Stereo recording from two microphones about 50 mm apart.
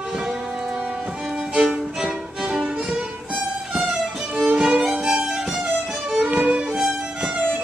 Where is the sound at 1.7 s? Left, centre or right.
Centre.